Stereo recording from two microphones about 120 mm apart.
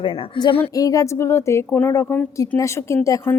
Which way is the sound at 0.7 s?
30° left (ahead or behind).